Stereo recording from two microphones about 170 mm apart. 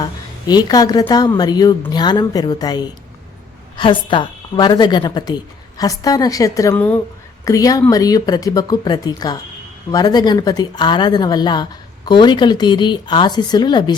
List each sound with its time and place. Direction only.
0.0 s a woman's voice: 25° left (ahead or behind)
7.4 s speech: 20° left (ahead or behind)